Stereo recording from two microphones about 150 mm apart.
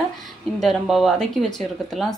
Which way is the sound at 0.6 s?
Centre (ahead or behind).